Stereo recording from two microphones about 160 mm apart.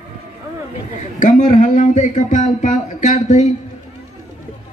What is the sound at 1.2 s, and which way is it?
Speech, 50° left (ahead or behind).